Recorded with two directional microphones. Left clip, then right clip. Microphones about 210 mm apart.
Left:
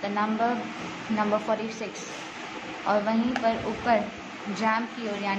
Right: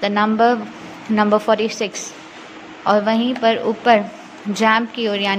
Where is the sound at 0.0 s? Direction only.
45° right (ahead or behind).